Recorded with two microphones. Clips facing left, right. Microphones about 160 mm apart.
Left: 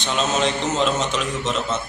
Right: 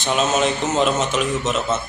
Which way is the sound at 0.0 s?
5° right (ahead or behind).